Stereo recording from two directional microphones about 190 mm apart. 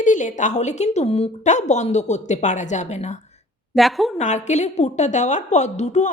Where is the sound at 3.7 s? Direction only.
Centre (ahead or behind).